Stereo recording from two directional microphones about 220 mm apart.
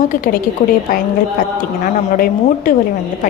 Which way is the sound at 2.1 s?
40° left (ahead or behind).